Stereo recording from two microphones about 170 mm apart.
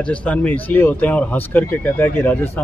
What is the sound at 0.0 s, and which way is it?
Speech, 5° left (ahead or behind).